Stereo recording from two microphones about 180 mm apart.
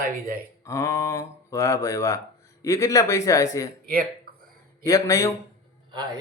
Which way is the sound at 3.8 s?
55° right (ahead or behind).